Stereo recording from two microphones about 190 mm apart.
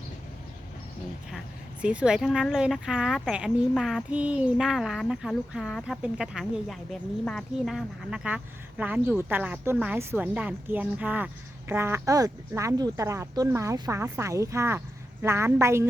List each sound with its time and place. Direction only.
1.8 s speech: 5° right (ahead or behind)